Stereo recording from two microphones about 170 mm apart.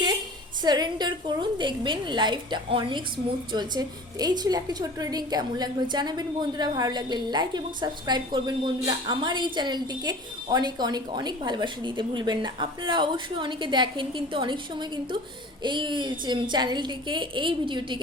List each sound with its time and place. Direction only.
0.6 s a woman's voice: 25° right (ahead or behind)